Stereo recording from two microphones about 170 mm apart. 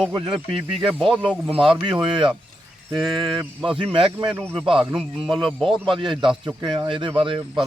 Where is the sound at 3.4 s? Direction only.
30° right (ahead or behind).